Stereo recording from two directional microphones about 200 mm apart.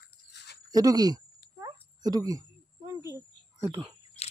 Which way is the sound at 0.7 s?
20° right (ahead or behind).